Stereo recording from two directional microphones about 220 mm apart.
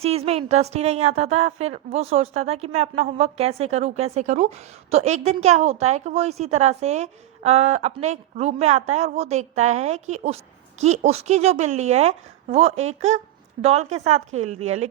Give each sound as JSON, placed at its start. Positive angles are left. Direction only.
{"t": 0.0, "sound": "a woman's voice", "side_deg": -30}